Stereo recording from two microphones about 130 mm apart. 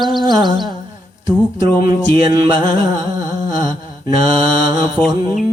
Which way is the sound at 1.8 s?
30° right (ahead or behind).